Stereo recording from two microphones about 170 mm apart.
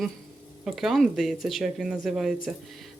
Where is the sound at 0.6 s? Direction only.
Centre (ahead or behind).